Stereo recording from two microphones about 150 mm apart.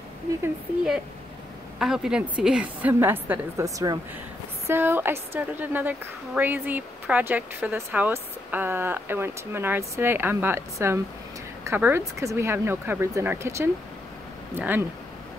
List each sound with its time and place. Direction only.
1.8 s a woman's voice: 5° right (ahead or behind)